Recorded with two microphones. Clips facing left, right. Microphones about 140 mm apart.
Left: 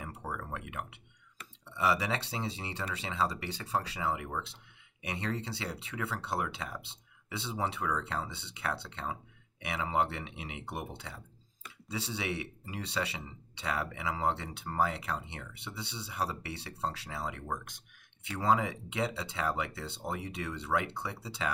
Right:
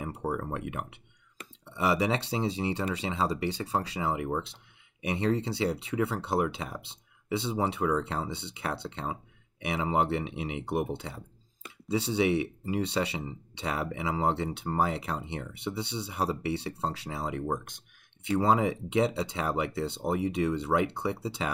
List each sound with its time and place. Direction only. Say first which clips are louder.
0.0 s speech: right 8 dB; 30° right (ahead or behind)